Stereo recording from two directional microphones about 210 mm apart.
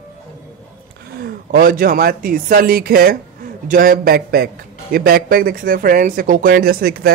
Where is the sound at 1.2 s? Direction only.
45° right (ahead or behind).